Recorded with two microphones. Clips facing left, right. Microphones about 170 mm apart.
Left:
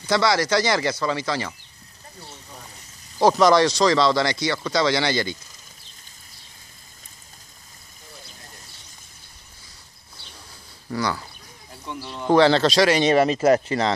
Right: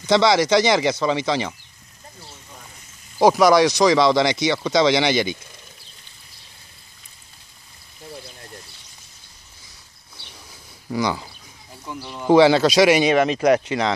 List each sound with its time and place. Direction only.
0.0 s speech: 20° right (ahead or behind)
3.2 s speech: 10° right (ahead or behind)
10.9 s speech: 15° right (ahead or behind)
11.8 s speech: 5° right (ahead or behind)
13.1 s speech: 5° left (ahead or behind)